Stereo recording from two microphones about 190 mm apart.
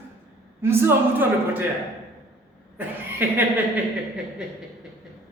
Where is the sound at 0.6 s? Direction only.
10° right (ahead or behind).